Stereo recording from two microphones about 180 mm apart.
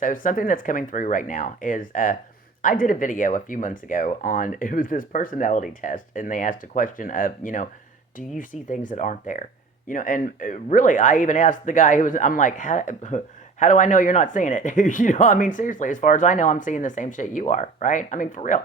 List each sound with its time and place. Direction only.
0.0 s speech: 45° left (ahead or behind)